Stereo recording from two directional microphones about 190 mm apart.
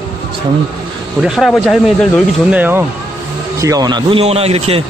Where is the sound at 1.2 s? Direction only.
Centre (ahead or behind); by 4.8 s 30° right (ahead or behind).